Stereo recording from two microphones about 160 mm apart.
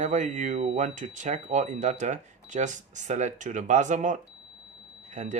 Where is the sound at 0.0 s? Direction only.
50° right (ahead or behind).